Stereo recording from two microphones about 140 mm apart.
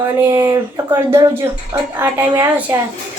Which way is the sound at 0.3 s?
25° right (ahead or behind).